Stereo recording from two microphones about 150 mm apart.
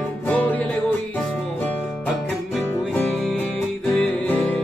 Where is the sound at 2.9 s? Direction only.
5° left (ahead or behind).